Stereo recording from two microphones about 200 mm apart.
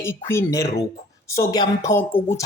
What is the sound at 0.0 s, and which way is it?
A woman's voice, 15° left (ahead or behind).